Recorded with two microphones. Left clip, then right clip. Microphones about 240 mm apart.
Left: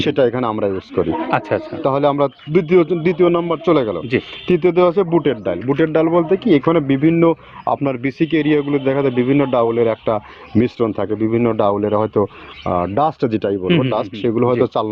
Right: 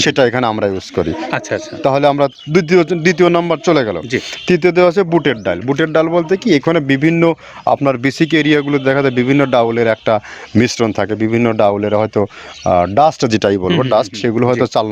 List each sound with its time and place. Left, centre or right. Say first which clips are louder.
0.0 s speech: right 4 dB; right
1.3 s speech: left 1 dB; centre
1.8 s speech: right 5 dB; right